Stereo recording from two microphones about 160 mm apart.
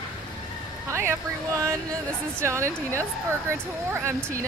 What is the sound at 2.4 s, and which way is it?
Speech, 15° right (ahead or behind).